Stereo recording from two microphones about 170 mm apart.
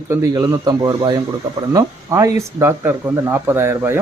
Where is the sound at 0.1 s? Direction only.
20° right (ahead or behind).